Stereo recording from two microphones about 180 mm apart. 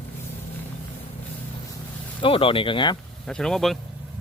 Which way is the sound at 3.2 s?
5° left (ahead or behind).